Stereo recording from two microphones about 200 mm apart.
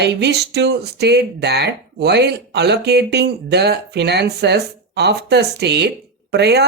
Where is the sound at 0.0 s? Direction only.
55° right (ahead or behind).